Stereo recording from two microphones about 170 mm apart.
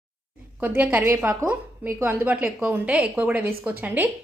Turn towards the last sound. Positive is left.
turn(degrees=-10)  # may be behind; listen again after turning